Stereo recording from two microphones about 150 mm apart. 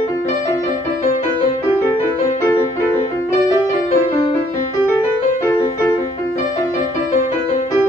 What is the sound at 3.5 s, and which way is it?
Music, 20° left (ahead or behind).